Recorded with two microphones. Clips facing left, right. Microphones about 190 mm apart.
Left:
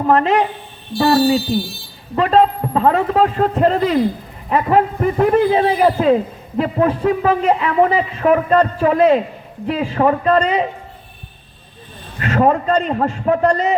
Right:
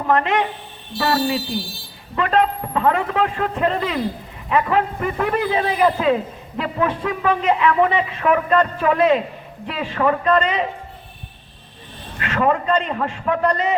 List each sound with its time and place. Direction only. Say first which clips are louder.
0.1 s a man's voice: left 4 dB; 35° left (ahead or behind)
0.9 s speech: left 6 dB; 25° left (ahead or behind)
2.1 s a man's voice: left 5 dB; 35° left (ahead or behind)
12.2 s a man's voice: left 4 dB; 40° left (ahead or behind)